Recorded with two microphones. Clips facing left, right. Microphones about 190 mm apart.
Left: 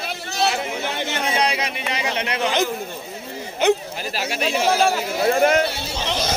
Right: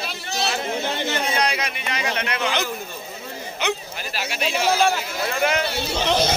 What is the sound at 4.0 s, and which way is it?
Speech, 35° left (ahead or behind).